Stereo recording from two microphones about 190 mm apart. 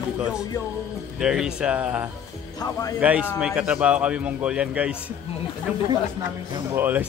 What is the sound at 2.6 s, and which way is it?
Speech, 20° left (ahead or behind).